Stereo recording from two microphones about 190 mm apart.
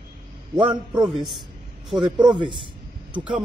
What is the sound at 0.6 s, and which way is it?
Speech, 25° right (ahead or behind).